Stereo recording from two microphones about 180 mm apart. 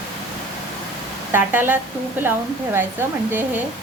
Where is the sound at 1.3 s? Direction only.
10° right (ahead or behind).